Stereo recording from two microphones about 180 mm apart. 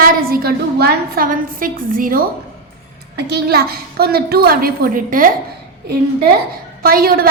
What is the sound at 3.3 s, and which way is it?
A woman's voice, 65° right (ahead or behind).